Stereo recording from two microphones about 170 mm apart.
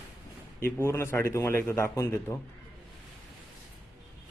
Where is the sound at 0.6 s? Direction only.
15° left (ahead or behind).